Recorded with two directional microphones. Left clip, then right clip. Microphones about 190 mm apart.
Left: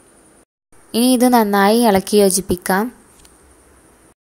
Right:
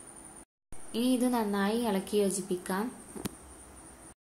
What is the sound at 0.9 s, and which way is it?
A woman's voice, 50° left (ahead or behind).